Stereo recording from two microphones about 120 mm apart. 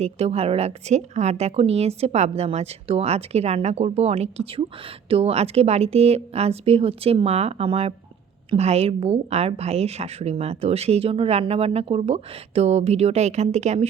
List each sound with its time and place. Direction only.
0.0 s a woman's voice: 60° right (ahead or behind)